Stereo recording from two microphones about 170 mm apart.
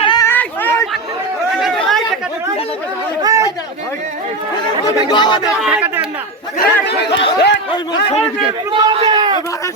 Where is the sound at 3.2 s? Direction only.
20° right (ahead or behind).